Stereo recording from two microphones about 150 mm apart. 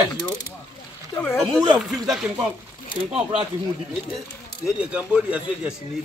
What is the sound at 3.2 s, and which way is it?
Speech, 40° right (ahead or behind).